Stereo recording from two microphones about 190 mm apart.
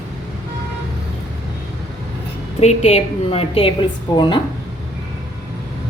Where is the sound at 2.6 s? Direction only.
35° left (ahead or behind).